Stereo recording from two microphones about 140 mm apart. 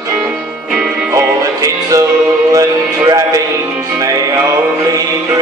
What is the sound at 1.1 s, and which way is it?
Music, 20° right (ahead or behind).